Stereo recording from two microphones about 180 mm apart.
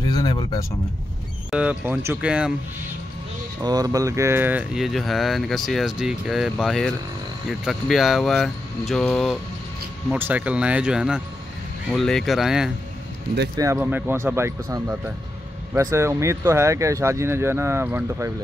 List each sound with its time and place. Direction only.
0.0 s a sound: 20° left (ahead or behind)
1.5 s speech: 5° right (ahead or behind)
3.6 s speech: 20° right (ahead or behind); by 9.4 s centre (ahead or behind)
10.1 s speech: 10° right (ahead or behind)
13.6 s speech: 15° right (ahead or behind)